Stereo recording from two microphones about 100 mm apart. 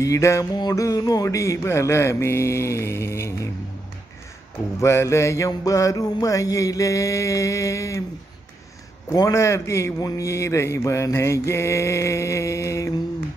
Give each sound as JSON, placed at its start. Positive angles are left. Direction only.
{"t": 0.0, "sound": "mantra", "side_deg": 30}
{"t": 0.6, "sound": "a man's voice", "side_deg": 35}
{"t": 4.7, "sound": "a man's voice", "side_deg": 30}
{"t": 5.5, "sound": "mantra", "side_deg": 35}
{"t": 9.1, "sound": "a man's voice", "side_deg": 30}